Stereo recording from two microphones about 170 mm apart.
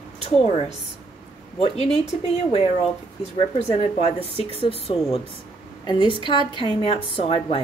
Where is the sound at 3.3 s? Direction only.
35° left (ahead or behind).